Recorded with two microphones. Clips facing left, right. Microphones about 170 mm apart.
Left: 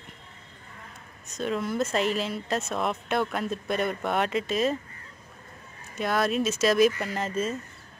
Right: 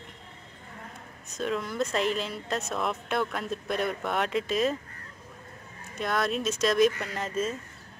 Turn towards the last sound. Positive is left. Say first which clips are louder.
# left 2 dB
turn(degrees=0)  # may be behind; listen again after turning